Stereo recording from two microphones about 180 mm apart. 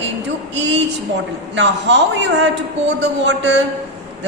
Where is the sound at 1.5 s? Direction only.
80° right.